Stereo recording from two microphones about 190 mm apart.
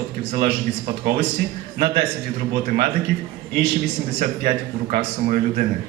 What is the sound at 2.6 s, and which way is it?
Speech, 50° right (ahead or behind).